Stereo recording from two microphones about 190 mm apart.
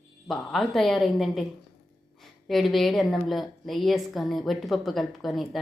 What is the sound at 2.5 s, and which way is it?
Speech, centre (ahead or behind).